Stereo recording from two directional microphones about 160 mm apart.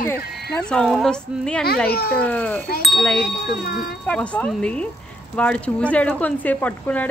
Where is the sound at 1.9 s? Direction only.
75° left (ahead or behind).